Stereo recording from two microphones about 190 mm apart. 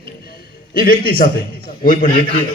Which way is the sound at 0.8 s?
50° left (ahead or behind).